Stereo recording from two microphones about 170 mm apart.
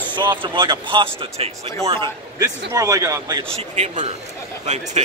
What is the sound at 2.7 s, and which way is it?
Speech, 20° right (ahead or behind).